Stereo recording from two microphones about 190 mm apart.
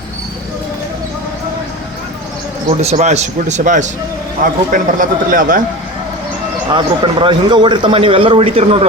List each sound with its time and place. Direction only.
2.6 s speech: 35° right (ahead or behind)
6.7 s a man's voice: 25° right (ahead or behind)